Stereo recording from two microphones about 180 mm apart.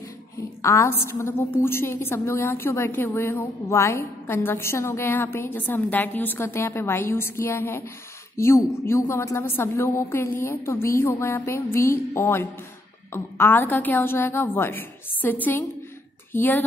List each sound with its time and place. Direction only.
0.6 s a woman's voice: 15° left (ahead or behind)